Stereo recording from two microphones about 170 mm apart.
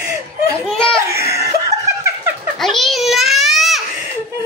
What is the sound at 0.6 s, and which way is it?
Belly laugh, 5° left (ahead or behind).